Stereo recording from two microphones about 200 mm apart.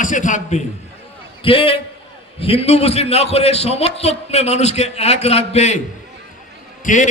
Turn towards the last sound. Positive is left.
turn(degrees=40)  # may be behind; listen again after turning